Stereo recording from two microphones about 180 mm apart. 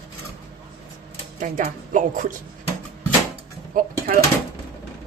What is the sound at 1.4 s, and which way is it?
Speech, 45° right (ahead or behind).